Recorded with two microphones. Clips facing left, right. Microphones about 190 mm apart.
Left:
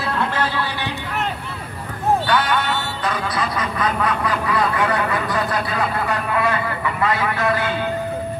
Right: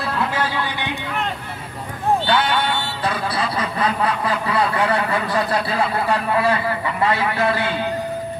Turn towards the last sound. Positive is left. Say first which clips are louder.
# right 1 dB
turn(degrees=-30)  # may be behind; listen again after turning